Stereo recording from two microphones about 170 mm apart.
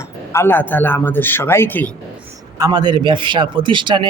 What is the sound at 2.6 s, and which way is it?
A man's voice, 25° right (ahead or behind).